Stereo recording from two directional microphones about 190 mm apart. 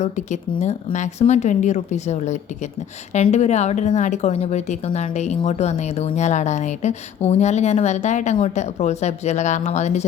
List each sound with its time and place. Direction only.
0.0 s speech: 40° left (ahead or behind)